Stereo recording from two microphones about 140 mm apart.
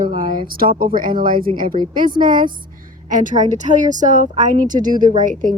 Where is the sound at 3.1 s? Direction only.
65° right (ahead or behind).